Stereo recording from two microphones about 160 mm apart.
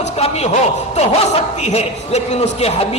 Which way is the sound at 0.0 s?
45° left (ahead or behind).